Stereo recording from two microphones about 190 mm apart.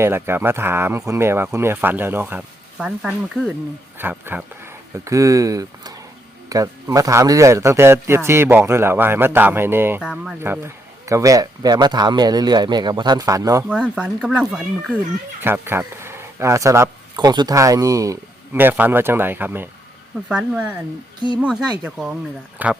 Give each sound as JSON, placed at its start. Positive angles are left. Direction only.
{"t": 0.0, "sound": "a man's voice", "side_deg": -10}
{"t": 13.7, "sound": "speech", "side_deg": -5}